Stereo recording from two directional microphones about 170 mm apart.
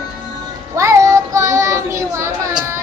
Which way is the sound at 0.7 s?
15° right (ahead or behind).